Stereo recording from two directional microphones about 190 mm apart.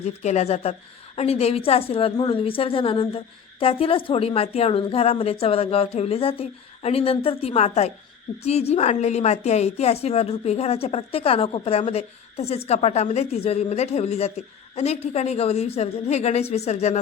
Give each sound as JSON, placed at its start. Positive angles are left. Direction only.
{"t": 0.0, "sound": "a woman's voice", "side_deg": 35}